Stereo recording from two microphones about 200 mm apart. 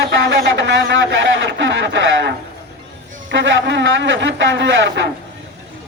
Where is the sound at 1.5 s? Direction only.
65° right (ahead or behind).